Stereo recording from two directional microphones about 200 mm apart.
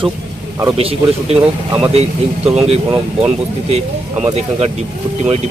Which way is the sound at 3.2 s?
30° right (ahead or behind).